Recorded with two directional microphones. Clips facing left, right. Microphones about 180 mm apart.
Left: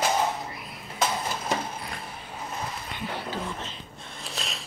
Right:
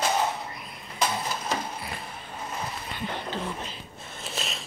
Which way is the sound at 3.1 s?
10° left (ahead or behind).